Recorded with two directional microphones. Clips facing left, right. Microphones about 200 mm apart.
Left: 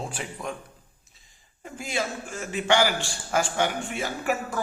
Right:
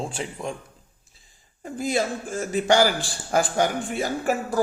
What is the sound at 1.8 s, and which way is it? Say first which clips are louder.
A man's voice: right 6 dB; 40° right (ahead or behind).